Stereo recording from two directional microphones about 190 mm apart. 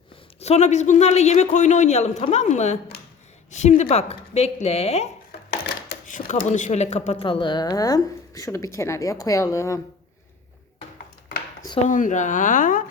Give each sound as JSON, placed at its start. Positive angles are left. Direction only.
{"t": 0.3, "sound": "a man's voice", "side_deg": 35}
{"t": 5.3, "sound": "a sound", "side_deg": 60}
{"t": 6.1, "sound": "speech", "side_deg": 45}
{"t": 11.9, "sound": "speech", "side_deg": 40}